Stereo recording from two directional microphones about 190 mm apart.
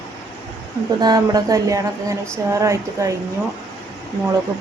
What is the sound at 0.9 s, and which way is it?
A woman's voice, 20° right (ahead or behind).